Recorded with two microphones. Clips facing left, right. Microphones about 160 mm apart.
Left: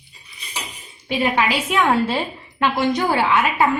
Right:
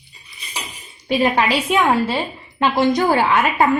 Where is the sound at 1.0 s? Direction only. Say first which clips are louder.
Right 3 dB; 35° right (ahead or behind).